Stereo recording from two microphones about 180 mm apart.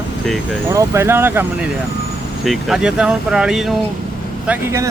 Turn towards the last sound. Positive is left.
turn(degrees=-15)  # may be behind; listen again after turning